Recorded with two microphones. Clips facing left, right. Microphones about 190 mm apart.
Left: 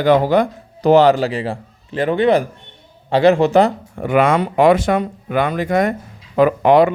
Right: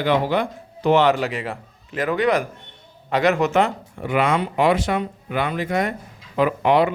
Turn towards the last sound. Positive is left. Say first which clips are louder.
# left 6 dB
turn(degrees=45)  # may be behind; listen again after turning